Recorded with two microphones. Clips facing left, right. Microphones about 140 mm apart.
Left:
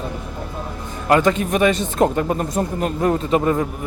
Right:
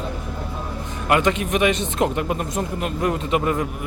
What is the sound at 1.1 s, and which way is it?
Speech, 35° left (ahead or behind).